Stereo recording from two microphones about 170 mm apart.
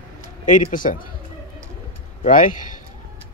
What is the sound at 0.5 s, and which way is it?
Speech, 50° left (ahead or behind).